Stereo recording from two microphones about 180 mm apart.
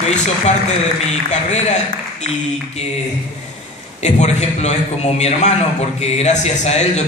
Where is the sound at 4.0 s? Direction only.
40° left (ahead or behind).